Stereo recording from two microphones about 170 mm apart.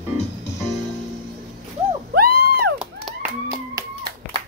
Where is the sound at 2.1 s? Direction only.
60° right (ahead or behind).